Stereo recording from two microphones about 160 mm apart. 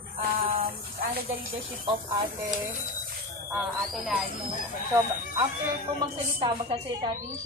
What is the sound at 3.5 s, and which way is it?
Speech, 5° right (ahead or behind).